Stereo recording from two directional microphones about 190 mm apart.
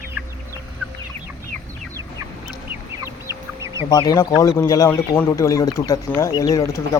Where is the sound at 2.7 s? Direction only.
15° right (ahead or behind).